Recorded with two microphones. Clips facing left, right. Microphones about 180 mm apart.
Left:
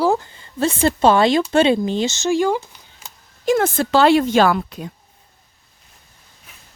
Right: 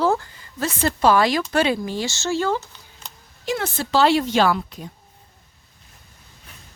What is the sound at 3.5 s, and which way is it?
Speech, 50° left (ahead or behind).